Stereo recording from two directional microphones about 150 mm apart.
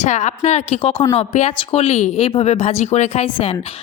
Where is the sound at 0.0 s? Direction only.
50° left (ahead or behind).